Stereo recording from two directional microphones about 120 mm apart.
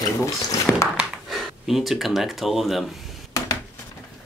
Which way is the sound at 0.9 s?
5° right (ahead or behind).